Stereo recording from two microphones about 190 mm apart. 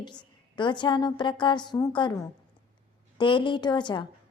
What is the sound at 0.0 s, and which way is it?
A woman's voice, 25° left (ahead or behind).